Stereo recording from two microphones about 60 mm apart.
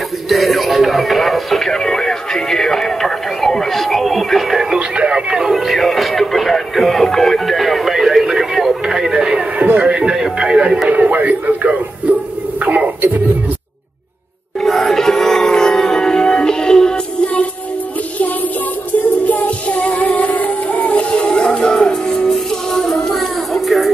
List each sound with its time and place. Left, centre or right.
0.3 s music: centre
4.7 s music: centre
10.9 s a sound: right
14.6 s music: centre
19.2 s music: left; by 23.9 s centre